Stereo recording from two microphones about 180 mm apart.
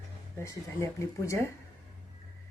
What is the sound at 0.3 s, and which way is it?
A woman's voice, 15° left (ahead or behind).